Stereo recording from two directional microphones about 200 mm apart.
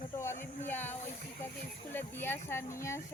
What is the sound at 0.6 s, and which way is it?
Speech, 10° left (ahead or behind).